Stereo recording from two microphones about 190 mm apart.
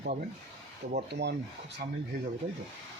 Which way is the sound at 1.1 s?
65° right (ahead or behind).